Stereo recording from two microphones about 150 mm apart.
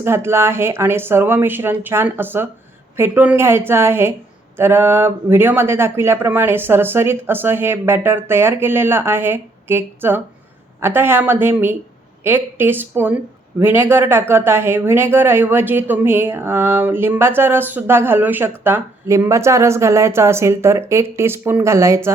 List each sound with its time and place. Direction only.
0.0 s speech: 15° right (ahead or behind)